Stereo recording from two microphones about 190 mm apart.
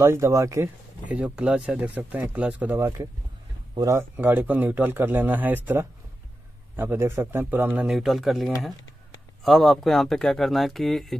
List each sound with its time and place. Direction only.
0.0 s speech: 15° right (ahead or behind)
1.1 s speech: 5° right (ahead or behind)